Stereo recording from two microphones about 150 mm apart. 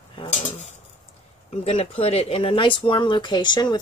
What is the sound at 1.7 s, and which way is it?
Speech, 45° left (ahead or behind).